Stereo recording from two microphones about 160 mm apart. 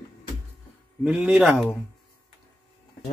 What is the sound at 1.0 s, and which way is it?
Speech, 5° right (ahead or behind).